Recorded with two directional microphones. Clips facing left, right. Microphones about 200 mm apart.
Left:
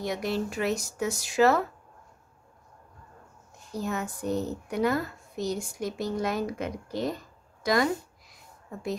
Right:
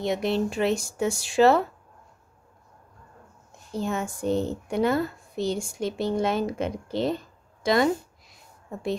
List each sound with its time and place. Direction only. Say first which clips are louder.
0.0 s speech: right 5 dB; 25° right (ahead or behind)
3.7 s speech: right 3 dB; 25° right (ahead or behind)